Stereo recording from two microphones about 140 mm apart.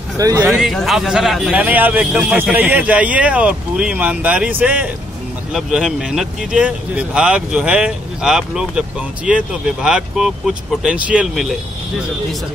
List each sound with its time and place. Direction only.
0.2 s speech: 25° right (ahead or behind)
0.5 s a man's voice: centre (ahead or behind)